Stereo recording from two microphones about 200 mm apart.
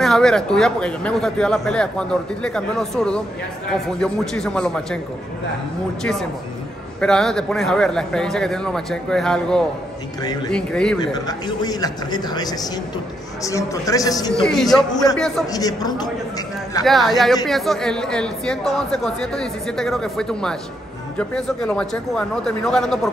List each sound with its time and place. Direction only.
0.0 s speech: centre (ahead or behind)
7.0 s speech: centre (ahead or behind)
11.0 s a man's voice: 20° left (ahead or behind)
14.4 s speech: centre (ahead or behind)
15.5 s a man's voice: 20° left (ahead or behind)
16.8 s speech: centre (ahead or behind)